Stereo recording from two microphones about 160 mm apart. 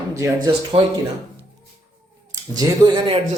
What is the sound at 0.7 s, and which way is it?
Speech, 40° right (ahead or behind).